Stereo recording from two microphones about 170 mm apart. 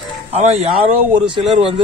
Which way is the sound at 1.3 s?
30° right (ahead or behind).